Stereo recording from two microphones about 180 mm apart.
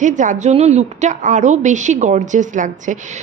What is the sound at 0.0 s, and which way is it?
A woman's voice, 45° right (ahead or behind).